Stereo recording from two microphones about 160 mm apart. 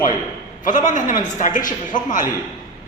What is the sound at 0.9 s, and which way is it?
Speech, 50° left (ahead or behind).